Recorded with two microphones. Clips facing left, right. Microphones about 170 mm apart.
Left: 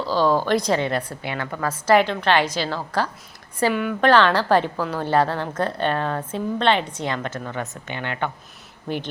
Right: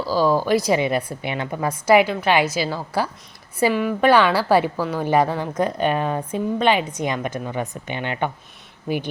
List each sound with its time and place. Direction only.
0.0 s a woman's voice: 5° right (ahead or behind)
8.9 s a woman's voice: 5° right (ahead or behind)